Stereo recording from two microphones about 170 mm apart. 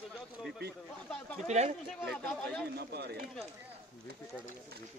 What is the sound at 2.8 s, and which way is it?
Speech, 70° right (ahead or behind).